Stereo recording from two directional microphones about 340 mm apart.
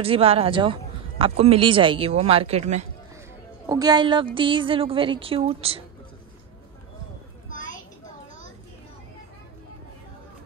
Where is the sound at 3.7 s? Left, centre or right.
Centre.